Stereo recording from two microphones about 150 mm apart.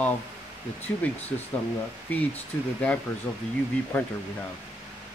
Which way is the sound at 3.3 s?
20° left (ahead or behind).